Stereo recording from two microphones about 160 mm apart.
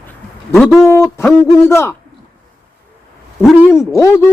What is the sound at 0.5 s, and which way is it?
Speech, centre (ahead or behind).